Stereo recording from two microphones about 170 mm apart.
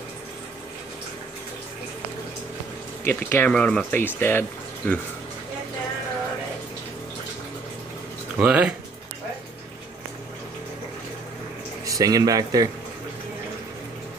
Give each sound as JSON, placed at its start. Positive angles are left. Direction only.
{"t": 3.0, "sound": "speech", "side_deg": 15}
{"t": 8.4, "sound": "speech", "side_deg": -10}
{"t": 11.8, "sound": "speech", "side_deg": -20}